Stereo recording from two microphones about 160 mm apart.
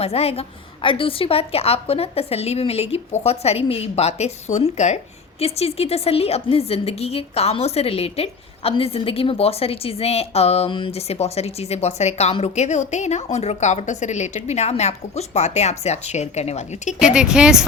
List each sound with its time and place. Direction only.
0.0 s a woman's voice: 40° left (ahead or behind)
17.0 s speech: 5° right (ahead or behind)